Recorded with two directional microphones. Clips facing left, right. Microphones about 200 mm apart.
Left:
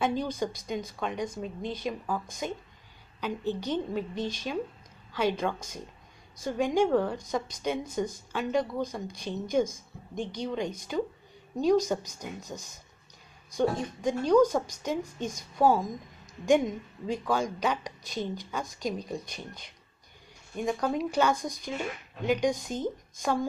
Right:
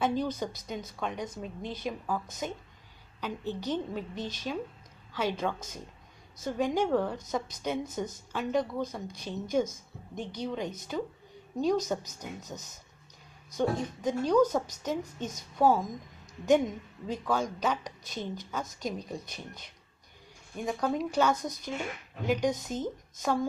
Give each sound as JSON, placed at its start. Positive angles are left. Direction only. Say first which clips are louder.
{"t": 0.0, "sound": "a woman's voice", "louder": "left 1 dB", "side_deg": -5}
{"t": 20.6, "sound": "a woman's voice", "louder": "left 1 dB", "side_deg": 0}